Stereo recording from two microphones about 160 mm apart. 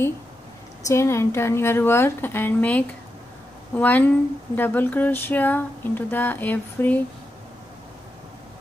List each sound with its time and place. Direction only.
0.8 s speech: 15° left (ahead or behind)